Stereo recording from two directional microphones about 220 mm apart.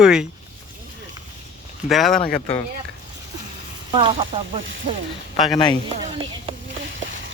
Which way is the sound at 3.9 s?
25° right (ahead or behind).